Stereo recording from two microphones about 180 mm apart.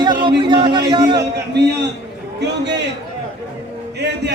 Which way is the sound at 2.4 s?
75° right (ahead or behind).